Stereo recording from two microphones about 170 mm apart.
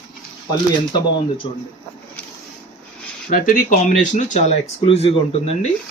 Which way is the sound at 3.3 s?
55° left (ahead or behind).